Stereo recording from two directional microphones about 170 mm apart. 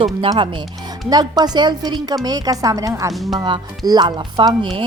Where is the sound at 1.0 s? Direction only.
25° right (ahead or behind).